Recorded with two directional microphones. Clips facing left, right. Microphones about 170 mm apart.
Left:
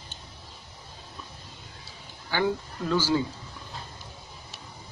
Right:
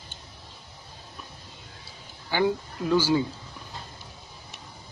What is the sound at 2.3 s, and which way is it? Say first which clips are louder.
Speech: right 2 dB; 15° right (ahead or behind).